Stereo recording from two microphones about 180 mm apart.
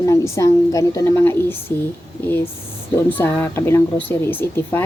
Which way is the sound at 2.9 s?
10° left (ahead or behind).